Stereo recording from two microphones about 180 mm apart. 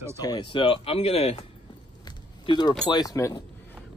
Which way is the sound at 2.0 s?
25° left (ahead or behind).